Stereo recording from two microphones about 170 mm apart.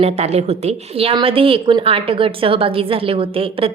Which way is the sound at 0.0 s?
40° right (ahead or behind).